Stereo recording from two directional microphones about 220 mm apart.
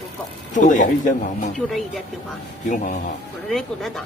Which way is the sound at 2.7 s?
35° left (ahead or behind).